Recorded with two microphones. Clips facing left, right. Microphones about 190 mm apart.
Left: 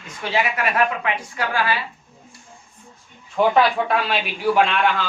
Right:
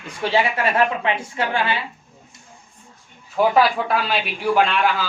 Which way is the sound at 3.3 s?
5° right (ahead or behind).